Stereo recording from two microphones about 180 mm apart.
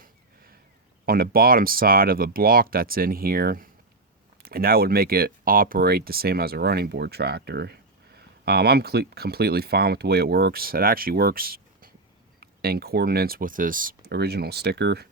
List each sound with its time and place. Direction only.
1.0 s speech: 55° right (ahead or behind)
14.1 s speech: 65° right (ahead or behind)